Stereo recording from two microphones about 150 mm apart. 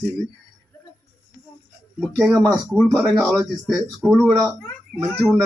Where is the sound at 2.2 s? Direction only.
15° right (ahead or behind).